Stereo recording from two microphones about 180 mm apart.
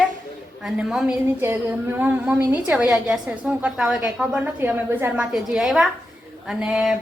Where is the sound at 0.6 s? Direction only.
5° right (ahead or behind).